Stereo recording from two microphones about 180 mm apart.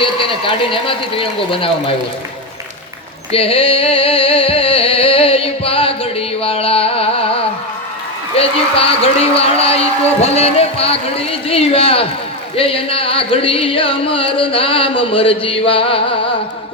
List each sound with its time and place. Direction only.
0.0 s speech: 30° left (ahead or behind)
3.3 s music: 30° left (ahead or behind)
8.4 s a man's voice: 35° left (ahead or behind)
12.5 s carnatic music: 30° left (ahead or behind)